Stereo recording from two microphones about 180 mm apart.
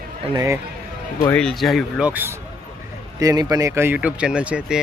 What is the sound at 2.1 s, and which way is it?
Speech, 10° right (ahead or behind).